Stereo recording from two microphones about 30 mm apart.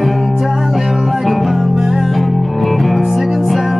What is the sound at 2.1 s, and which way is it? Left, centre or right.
Music, centre.